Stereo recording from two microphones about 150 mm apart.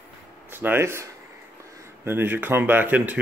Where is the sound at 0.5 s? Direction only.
15° right (ahead or behind).